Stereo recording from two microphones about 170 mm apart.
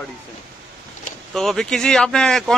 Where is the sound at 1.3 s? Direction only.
Centre (ahead or behind).